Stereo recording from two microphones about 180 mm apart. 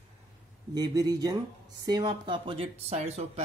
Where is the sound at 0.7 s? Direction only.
20° right (ahead or behind).